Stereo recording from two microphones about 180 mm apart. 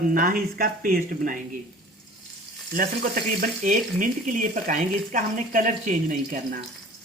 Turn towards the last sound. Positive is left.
turn(degrees=-45)  # may be behind; listen again after turning